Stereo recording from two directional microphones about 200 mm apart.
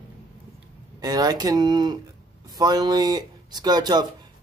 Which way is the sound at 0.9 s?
20° right (ahead or behind).